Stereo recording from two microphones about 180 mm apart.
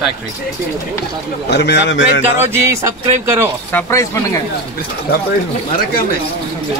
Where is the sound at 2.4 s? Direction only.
15° right (ahead or behind).